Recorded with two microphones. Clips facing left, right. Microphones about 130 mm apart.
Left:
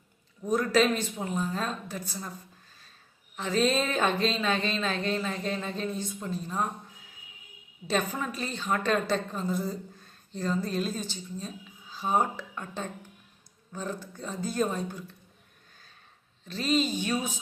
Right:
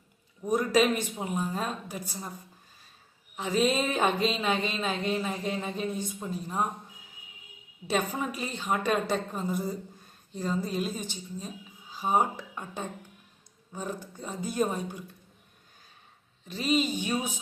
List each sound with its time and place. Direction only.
0.4 s a woman's voice: 15° right (ahead or behind)
3.3 s a woman's voice: 10° right (ahead or behind)
7.9 s a woman's voice: 15° right (ahead or behind)
16.5 s a woman's voice: 10° right (ahead or behind)